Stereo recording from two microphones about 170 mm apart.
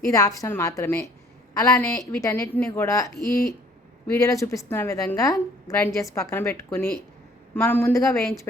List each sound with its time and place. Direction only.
0.1 s a woman's voice: 20° left (ahead or behind)